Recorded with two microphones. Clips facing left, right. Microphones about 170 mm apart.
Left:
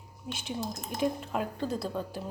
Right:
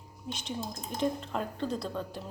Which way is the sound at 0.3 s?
5° left (ahead or behind).